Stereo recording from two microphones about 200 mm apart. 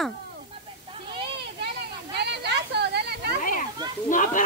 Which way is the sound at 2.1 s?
60° right (ahead or behind).